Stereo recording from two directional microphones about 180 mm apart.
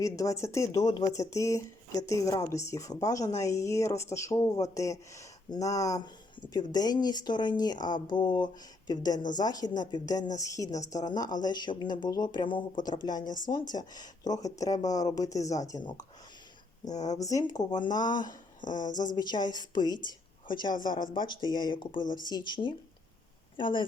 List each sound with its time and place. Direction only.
0.0 s a woman's voice: 15° left (ahead or behind)
18.2 s speech: 45° left (ahead or behind)
19.1 s a woman's voice: 25° left (ahead or behind)